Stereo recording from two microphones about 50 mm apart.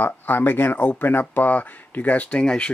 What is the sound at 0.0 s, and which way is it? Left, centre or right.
Speech, left.